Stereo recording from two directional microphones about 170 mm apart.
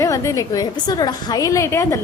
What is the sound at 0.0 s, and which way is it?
A woman's voice, 20° left (ahead or behind).